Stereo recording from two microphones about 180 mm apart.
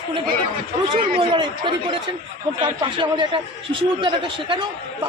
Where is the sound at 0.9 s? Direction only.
30° right (ahead or behind).